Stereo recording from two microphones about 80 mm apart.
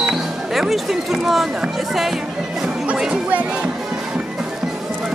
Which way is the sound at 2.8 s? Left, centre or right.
Centre.